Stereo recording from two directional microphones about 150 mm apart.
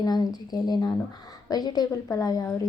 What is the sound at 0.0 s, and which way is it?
A woman's voice, 25° left (ahead or behind).